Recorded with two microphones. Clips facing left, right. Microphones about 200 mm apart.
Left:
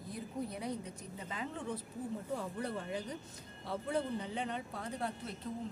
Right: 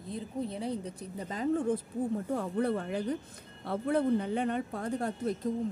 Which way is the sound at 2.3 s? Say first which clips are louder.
Right 9 dB; 55° right (ahead or behind).